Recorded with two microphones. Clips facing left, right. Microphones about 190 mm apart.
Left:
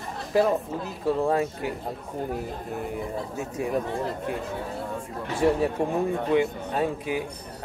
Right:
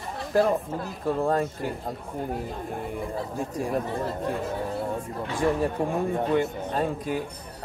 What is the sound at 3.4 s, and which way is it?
Speech, 5° left (ahead or behind).